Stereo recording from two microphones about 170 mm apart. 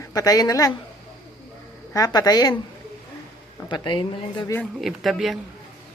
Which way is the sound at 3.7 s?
30° left (ahead or behind).